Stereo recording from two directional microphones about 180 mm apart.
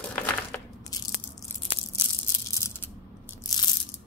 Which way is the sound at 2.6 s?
15° left (ahead or behind).